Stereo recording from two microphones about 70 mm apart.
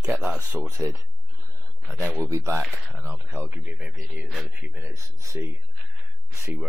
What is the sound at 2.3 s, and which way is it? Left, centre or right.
Speech, right.